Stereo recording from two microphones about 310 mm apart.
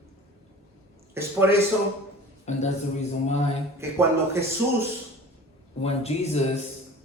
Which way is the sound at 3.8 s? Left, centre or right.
Centre.